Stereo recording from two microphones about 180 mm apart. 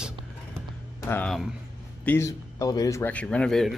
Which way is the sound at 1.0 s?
10° left (ahead or behind).